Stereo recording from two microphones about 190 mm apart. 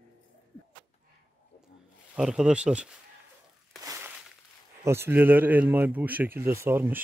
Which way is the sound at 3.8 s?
15° right (ahead or behind).